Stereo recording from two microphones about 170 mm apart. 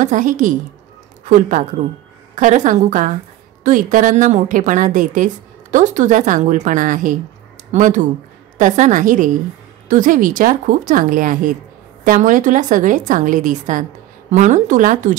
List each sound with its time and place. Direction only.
0.0 s a woman's voice: 50° right (ahead or behind)